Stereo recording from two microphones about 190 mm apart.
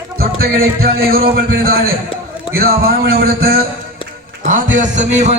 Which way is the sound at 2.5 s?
50° right (ahead or behind).